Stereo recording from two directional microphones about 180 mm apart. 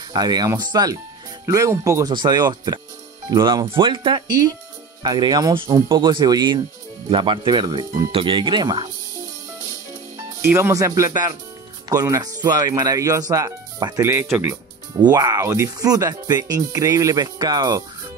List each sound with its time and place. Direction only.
0.1 s speech: 20° right (ahead or behind)
10.4 s speech: 15° right (ahead or behind)